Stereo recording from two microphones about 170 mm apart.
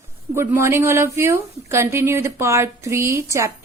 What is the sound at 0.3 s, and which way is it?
A woman's voice, 15° right (ahead or behind).